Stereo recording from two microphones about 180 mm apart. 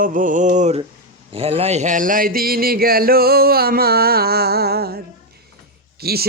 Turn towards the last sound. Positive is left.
turn(degrees=-60)  # may be behind; listen again after turning